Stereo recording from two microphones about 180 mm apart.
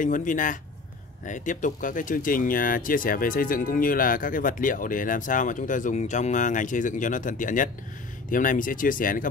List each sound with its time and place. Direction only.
0.0 s speech: 45° left (ahead or behind)